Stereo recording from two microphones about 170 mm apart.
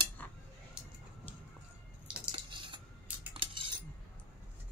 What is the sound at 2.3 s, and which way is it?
Cutlery, 30° right (ahead or behind).